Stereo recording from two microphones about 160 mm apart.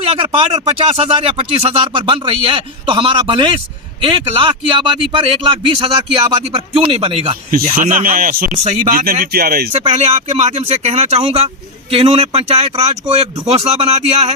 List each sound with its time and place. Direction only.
0.0 s a sound: 40° right (ahead or behind)
0.3 s a man's voice: 35° right (ahead or behind)
7.5 s speech: 60° right (ahead or behind)
9.7 s a man's voice: 40° right (ahead or behind)